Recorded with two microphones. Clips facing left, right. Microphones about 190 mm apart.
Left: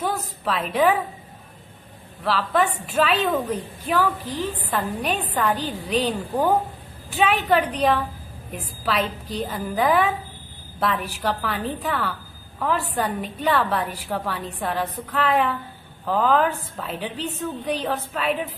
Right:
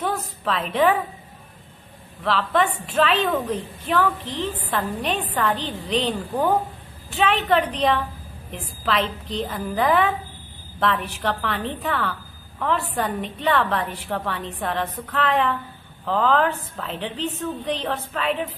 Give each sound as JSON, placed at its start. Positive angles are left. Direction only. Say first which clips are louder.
{"t": 0.0, "sound": "a woman's voice", "louder": "even", "side_deg": 5}
{"t": 2.2, "sound": "a woman's voice", "louder": "even", "side_deg": 5}